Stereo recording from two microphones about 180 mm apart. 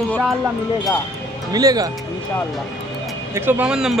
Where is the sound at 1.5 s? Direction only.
20° right (ahead or behind).